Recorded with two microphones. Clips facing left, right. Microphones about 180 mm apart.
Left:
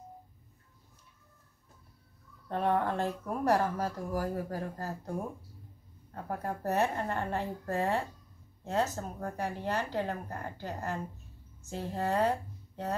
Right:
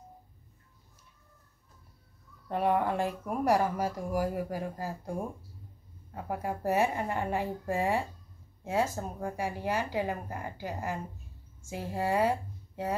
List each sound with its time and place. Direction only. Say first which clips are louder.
2.4 s speech: right 2 dB; 10° right (ahead or behind)
6.1 s a woman's voice: right 2 dB; 10° right (ahead or behind)